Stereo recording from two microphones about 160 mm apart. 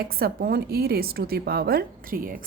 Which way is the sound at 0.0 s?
70° right (ahead or behind).